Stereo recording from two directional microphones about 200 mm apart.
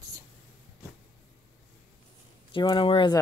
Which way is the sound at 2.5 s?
25° left (ahead or behind).